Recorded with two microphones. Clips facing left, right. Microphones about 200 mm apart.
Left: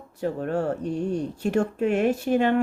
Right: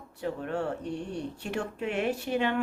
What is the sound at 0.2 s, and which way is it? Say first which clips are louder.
A woman's voice: left 6 dB; 40° left (ahead or behind).